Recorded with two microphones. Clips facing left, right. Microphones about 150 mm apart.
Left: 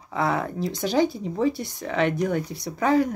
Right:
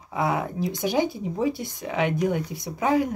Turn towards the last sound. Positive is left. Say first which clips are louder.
# left 2 dB
turn(degrees=-15)  # may be behind; listen again after turning